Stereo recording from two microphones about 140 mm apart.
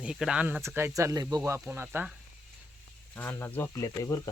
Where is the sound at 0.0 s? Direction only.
5° right (ahead or behind); by 1.4 s 25° right (ahead or behind).